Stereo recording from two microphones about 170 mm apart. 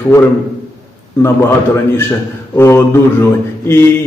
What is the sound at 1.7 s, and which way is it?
Speech, 15° left (ahead or behind).